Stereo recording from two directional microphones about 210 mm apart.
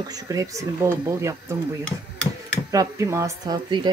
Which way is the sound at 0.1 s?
15° right (ahead or behind).